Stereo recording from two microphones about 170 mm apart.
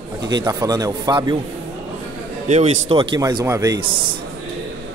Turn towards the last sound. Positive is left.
turn(degrees=-30)  # may be behind; listen again after turning